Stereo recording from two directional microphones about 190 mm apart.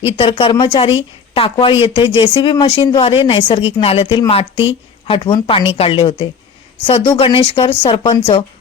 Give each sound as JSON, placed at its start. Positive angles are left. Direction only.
{"t": 0.0, "sound": "speech", "side_deg": 30}